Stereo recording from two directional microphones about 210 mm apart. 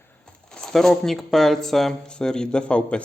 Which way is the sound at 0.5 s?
Centre (ahead or behind).